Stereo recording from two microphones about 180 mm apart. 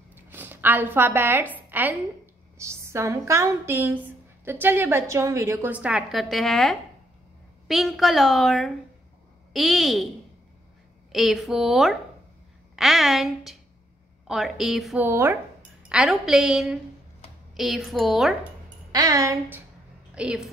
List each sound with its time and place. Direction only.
0.1 s a sound: 10° right (ahead or behind)
1.7 s a woman's voice: 10° right (ahead or behind)
11.1 s a woman's voice: centre (ahead or behind)
15.0 s a woman's voice: 15° right (ahead or behind)
15.9 s a woman's voice: 5° right (ahead or behind)
18.9 s a woman's voice: 20° right (ahead or behind)
20.2 s a woman's voice: 5° right (ahead or behind)